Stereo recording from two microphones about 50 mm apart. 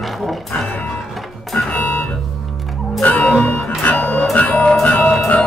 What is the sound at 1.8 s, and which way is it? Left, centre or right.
Music, left.